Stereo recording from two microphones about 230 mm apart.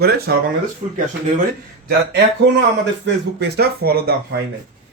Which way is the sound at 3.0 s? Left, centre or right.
Right.